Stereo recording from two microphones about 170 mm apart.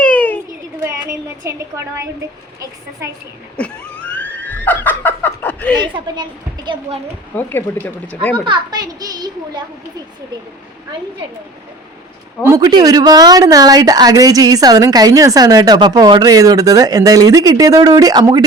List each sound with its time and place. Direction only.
0.0 s a sound: 10° left (ahead or behind)
1.5 s speech: 20° right (ahead or behind)
3.6 s snicker: 10° left (ahead or behind)
5.7 s speech: 25° right (ahead or behind)
7.3 s speech: 10° left (ahead or behind)
8.4 s speech: 25° right (ahead or behind)
12.5 s speech: 20° right (ahead or behind)